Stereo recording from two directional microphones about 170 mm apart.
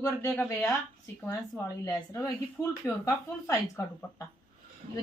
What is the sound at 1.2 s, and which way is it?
Speech, 15° left (ahead or behind).